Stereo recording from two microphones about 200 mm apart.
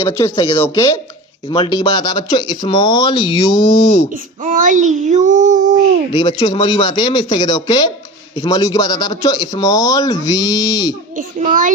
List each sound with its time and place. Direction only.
0.0 s speech: 15° left (ahead or behind)
1.5 s speech: 25° left (ahead or behind)
4.1 s a child's voice: 40° right (ahead or behind)
6.1 s speech: 20° left (ahead or behind)
11.1 s a child's voice: 40° right (ahead or behind)